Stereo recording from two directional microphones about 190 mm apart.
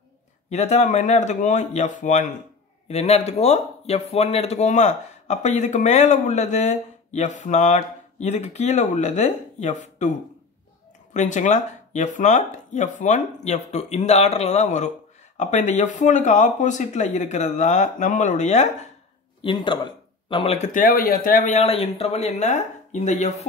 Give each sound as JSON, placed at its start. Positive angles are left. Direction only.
{"t": 0.5, "sound": "speech", "side_deg": 35}
{"t": 11.1, "sound": "speech", "side_deg": 40}
{"t": 19.4, "sound": "speech", "side_deg": 25}